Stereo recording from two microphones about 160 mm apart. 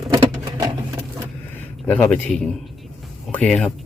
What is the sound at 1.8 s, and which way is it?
A man's voice, 10° left (ahead or behind).